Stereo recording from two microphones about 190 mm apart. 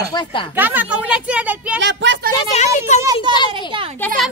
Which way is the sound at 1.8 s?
75° right (ahead or behind).